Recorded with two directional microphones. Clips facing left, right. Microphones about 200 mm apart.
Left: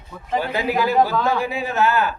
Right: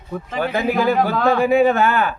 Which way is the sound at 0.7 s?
50° right (ahead or behind).